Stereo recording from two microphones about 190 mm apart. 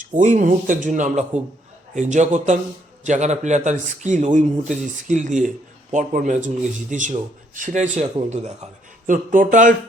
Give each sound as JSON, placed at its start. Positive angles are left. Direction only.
{"t": 0.0, "sound": "a man's voice", "side_deg": -40}